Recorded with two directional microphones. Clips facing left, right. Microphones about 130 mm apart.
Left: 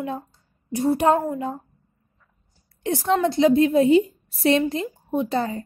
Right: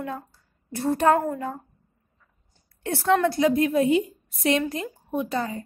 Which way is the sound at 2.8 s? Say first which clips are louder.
Left 1 dB; 15° left (ahead or behind).